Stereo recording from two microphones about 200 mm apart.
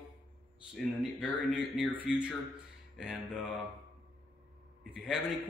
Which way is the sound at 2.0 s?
5° right (ahead or behind).